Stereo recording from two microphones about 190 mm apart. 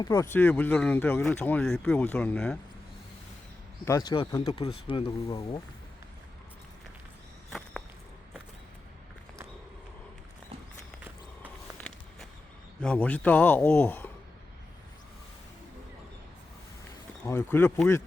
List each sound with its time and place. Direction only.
0.0 s speech: 15° left (ahead or behind)
3.8 s speech: 15° left (ahead or behind)
11.8 s a sound: 5° left (ahead or behind)
12.8 s speech: 5° left (ahead or behind)
17.2 s speech: 15° left (ahead or behind)